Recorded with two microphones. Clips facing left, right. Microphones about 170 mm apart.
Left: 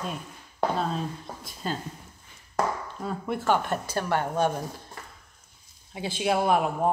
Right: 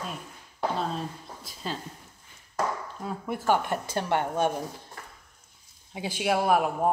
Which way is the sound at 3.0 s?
5° right (ahead or behind).